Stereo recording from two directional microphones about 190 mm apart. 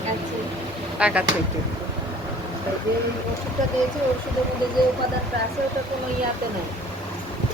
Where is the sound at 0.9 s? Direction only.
5° right (ahead or behind).